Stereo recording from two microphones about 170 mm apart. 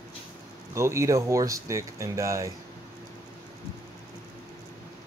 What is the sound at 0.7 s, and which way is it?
Speech, 15° right (ahead or behind).